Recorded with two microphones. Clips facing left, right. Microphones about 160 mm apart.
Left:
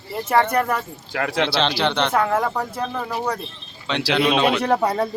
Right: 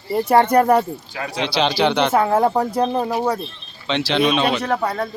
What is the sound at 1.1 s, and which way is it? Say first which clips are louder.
Speech: left 3 dB; 65° left (ahead or behind).